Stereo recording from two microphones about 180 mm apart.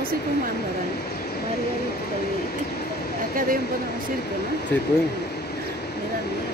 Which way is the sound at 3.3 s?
50° right (ahead or behind).